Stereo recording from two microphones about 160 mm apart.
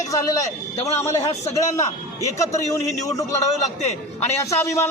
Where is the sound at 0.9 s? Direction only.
20° left (ahead or behind).